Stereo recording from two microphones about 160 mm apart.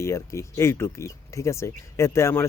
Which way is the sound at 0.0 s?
20° left (ahead or behind).